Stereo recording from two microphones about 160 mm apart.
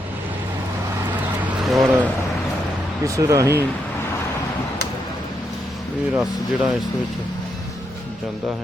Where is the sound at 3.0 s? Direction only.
20° right (ahead or behind).